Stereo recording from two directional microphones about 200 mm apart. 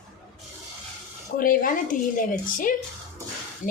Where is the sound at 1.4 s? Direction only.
45° left (ahead or behind).